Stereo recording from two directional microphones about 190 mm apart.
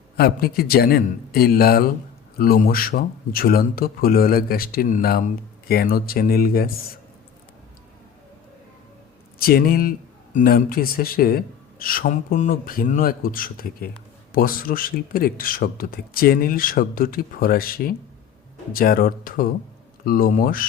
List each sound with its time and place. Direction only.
0.2 s speech: 55° left (ahead or behind)
9.4 s speech: 50° left (ahead or behind)